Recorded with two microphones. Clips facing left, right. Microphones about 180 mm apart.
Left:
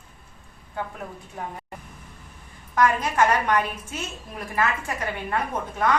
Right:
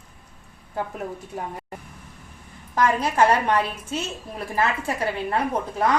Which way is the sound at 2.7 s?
30° right (ahead or behind).